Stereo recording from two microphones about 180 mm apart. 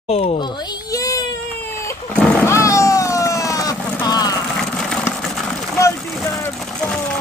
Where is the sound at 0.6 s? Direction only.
20° left (ahead or behind).